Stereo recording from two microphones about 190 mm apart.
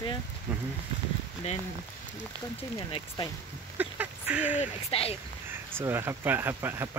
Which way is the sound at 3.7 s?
10° right (ahead or behind).